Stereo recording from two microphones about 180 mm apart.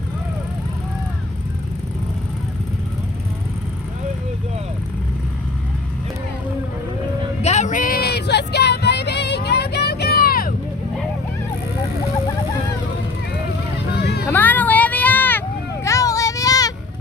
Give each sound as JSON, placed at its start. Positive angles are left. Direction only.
{"t": 7.4, "sound": "music", "side_deg": 40}
{"t": 13.9, "sound": "vehicle", "side_deg": 65}
{"t": 14.3, "sound": "a sound", "side_deg": 10}